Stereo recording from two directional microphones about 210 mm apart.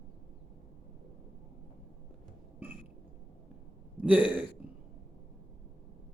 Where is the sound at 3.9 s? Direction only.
5° right (ahead or behind).